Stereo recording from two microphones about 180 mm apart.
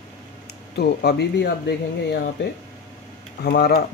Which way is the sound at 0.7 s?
65° left (ahead or behind).